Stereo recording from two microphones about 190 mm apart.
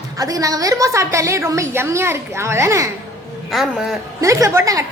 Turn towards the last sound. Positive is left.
turn(degrees=-20)  # may be behind; listen again after turning